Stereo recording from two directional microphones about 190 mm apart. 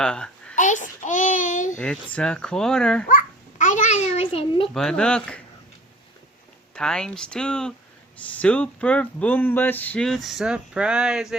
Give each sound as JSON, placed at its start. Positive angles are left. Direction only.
{"t": 0.0, "sound": "a woman's voice", "side_deg": 5}
{"t": 0.5, "sound": "a sound", "side_deg": 40}
{"t": 1.8, "sound": "speech", "side_deg": 5}
{"t": 3.1, "sound": "babbling", "side_deg": 45}
{"t": 4.6, "sound": "speech", "side_deg": 0}
{"t": 6.7, "sound": "speech", "side_deg": 5}